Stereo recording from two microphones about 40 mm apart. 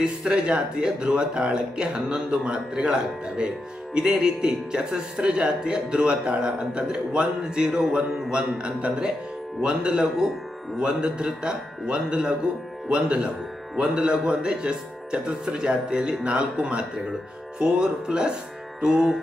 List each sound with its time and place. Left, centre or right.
0.0 s music: centre
0.5 s speech: right
18.8 s music: centre